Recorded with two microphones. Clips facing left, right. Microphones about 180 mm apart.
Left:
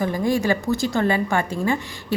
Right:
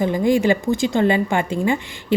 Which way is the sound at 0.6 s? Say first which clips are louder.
Right 3 dB; 50° right (ahead or behind).